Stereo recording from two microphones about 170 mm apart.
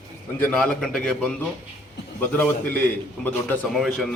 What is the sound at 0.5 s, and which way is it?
Speech, 10° left (ahead or behind).